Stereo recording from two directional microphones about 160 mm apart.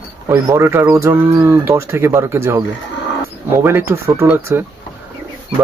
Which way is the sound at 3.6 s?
15° right (ahead or behind).